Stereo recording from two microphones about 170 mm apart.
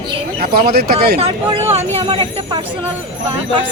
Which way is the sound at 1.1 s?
35° right (ahead or behind).